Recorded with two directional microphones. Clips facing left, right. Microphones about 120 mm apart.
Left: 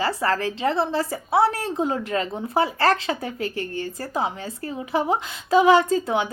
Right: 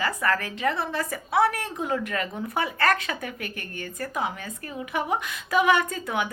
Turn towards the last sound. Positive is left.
turn(degrees=25)  # may be behind; listen again after turning